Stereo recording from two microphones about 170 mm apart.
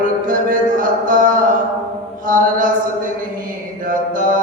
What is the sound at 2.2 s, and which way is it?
Mantra, 50° right (ahead or behind).